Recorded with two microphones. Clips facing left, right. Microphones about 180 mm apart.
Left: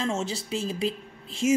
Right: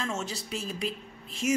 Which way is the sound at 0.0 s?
30° left (ahead or behind).